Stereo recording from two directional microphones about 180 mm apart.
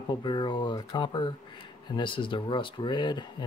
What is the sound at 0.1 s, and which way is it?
Speech, 25° left (ahead or behind).